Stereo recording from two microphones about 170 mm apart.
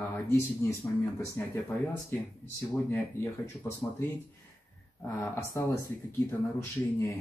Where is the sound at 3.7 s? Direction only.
15° left (ahead or behind).